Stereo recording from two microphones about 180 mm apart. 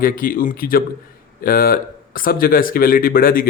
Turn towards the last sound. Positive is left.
turn(degrees=55)  # may be behind; listen again after turning